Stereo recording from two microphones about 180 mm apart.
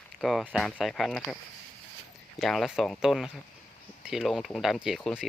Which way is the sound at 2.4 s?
Centre (ahead or behind).